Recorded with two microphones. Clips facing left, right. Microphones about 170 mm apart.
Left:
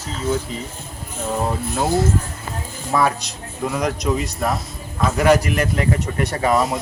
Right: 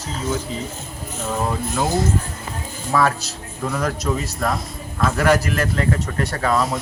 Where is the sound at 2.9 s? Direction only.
15° left (ahead or behind).